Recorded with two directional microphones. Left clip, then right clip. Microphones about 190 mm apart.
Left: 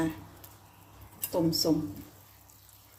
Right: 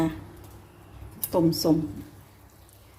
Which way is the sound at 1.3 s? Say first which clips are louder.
Right 5 dB; 10° right (ahead or behind).